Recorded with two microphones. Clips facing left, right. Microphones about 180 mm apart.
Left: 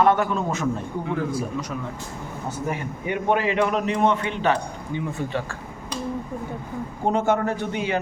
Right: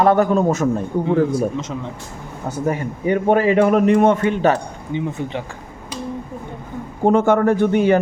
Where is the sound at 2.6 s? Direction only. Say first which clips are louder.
Right 9 dB; 45° right (ahead or behind).